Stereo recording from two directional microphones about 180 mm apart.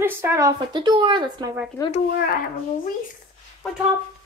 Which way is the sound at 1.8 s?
15° left (ahead or behind).